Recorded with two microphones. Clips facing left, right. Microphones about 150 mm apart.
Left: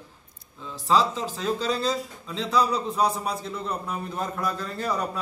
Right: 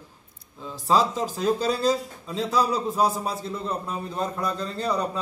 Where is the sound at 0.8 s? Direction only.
40° right (ahead or behind).